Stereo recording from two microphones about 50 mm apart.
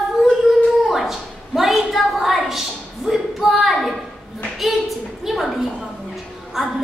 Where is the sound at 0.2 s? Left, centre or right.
Centre.